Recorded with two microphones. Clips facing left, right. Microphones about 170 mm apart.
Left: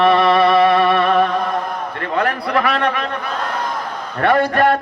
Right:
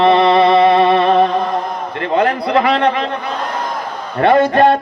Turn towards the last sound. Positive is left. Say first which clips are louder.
# right 4 dB
turn(degrees=-25)  # may be behind; listen again after turning